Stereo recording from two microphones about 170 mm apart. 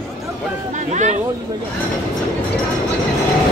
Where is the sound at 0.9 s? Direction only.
45° right (ahead or behind).